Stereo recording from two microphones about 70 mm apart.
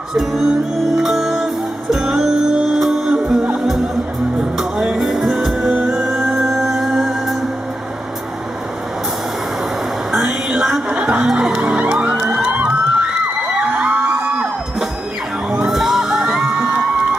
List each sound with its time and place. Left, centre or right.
0.1 s music: centre
6.4 s music: centre
10.2 s a sound: centre
10.8 s music: centre
13.6 s a sound: centre
15.4 s music: centre